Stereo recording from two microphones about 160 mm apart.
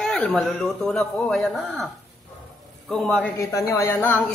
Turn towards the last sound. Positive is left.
turn(degrees=15)  # may be behind; listen again after turning